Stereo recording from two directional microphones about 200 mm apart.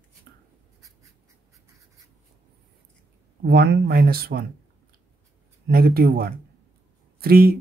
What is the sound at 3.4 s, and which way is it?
Speech, 55° right (ahead or behind).